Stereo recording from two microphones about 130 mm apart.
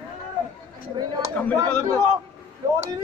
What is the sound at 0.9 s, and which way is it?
Speech, 30° right (ahead or behind).